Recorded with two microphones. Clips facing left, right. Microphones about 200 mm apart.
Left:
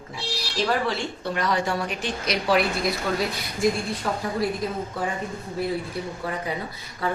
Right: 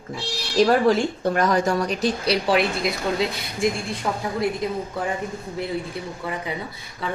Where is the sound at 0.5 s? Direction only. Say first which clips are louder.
Right 8 dB; 45° right (ahead or behind); by 3.3 s 25° right (ahead or behind).